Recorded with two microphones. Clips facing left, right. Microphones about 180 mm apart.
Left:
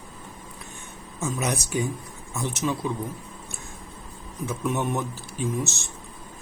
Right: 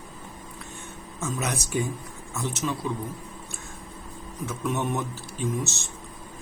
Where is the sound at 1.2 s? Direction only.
15° left (ahead or behind).